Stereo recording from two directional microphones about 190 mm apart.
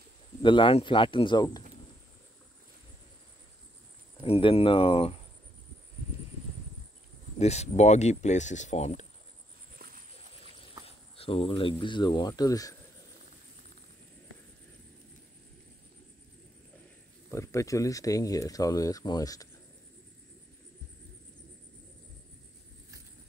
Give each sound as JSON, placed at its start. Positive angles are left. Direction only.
{"t": 0.4, "sound": "speech", "side_deg": 25}
{"t": 4.2, "sound": "speech", "side_deg": 30}
{"t": 7.3, "sound": "speech", "side_deg": 35}
{"t": 10.9, "sound": "speech", "side_deg": 30}
{"t": 17.3, "sound": "speech", "side_deg": 15}